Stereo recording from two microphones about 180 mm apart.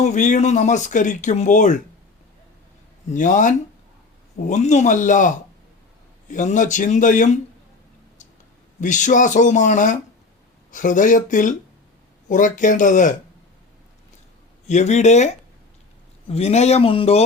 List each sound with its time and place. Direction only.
0.0 s speech: 40° left (ahead or behind)
3.1 s speech: 45° left (ahead or behind)
8.8 s speech: 45° left (ahead or behind)
14.7 s speech: 40° left (ahead or behind)